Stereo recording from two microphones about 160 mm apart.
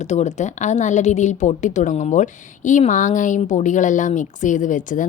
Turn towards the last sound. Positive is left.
turn(degrees=55)  # may be behind; listen again after turning